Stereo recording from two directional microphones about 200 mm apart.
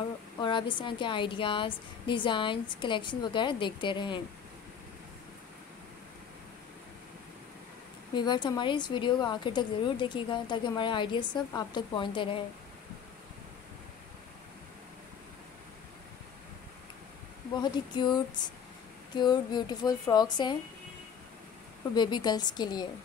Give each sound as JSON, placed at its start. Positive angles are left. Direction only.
{"t": 0.4, "sound": "a woman's voice", "side_deg": 25}
{"t": 8.1, "sound": "a woman's voice", "side_deg": 20}
{"t": 17.6, "sound": "a woman's voice", "side_deg": 20}
{"t": 21.9, "sound": "a woman's voice", "side_deg": 20}